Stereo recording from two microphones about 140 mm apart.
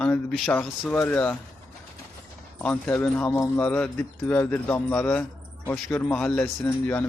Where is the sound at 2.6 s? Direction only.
10° left (ahead or behind).